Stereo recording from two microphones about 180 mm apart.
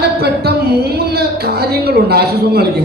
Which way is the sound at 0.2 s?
60° right (ahead or behind).